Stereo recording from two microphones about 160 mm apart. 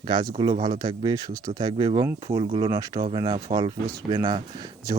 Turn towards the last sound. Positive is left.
turn(degrees=-25)  # may be behind; listen again after turning